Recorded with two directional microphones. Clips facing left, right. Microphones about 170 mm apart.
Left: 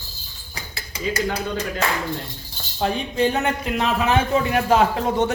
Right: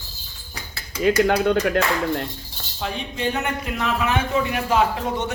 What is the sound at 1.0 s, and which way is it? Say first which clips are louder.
Speech: right 7 dB; 70° right (ahead or behind).